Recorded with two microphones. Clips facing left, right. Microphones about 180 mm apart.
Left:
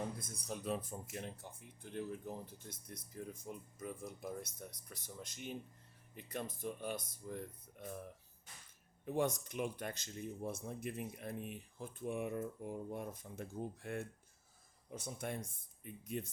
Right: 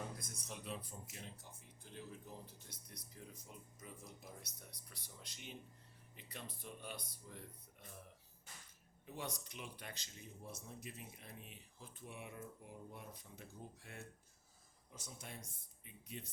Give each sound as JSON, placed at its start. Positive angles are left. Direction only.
{"t": 0.2, "sound": "speech", "side_deg": 35}
{"t": 9.0, "sound": "speech", "side_deg": 50}